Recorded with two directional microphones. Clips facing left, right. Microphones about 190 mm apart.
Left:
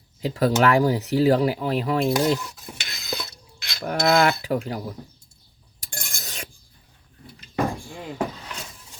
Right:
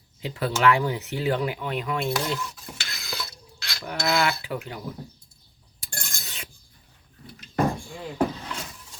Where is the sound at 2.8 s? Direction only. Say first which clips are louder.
Left 4 dB; 20° left (ahead or behind).